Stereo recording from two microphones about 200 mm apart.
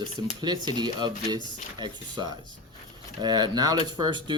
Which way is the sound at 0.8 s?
20° right (ahead or behind).